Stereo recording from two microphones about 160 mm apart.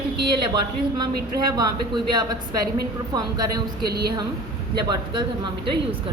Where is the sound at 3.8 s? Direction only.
80° right.